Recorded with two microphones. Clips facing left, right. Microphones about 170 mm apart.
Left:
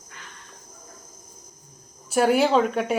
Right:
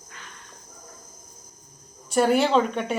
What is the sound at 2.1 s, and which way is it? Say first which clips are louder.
Speech: left 1 dB; 5° left (ahead or behind).